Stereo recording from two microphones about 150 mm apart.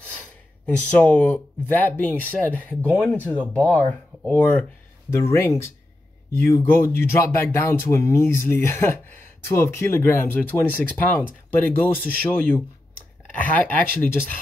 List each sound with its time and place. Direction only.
0.7 s speech: 10° left (ahead or behind)